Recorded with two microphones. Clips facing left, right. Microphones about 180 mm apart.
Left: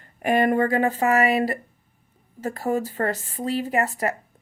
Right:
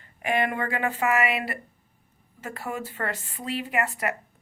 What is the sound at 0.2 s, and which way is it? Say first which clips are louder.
Speech: left 7 dB; 40° left (ahead or behind).